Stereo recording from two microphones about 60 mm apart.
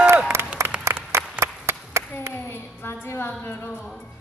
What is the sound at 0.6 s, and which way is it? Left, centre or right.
Applause, right.